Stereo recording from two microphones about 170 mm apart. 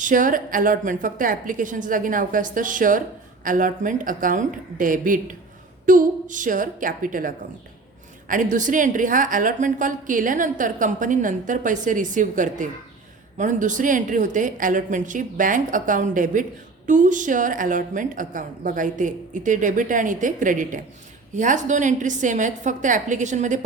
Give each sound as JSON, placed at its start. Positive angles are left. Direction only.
{"t": 0.0, "sound": "a woman's voice", "side_deg": -50}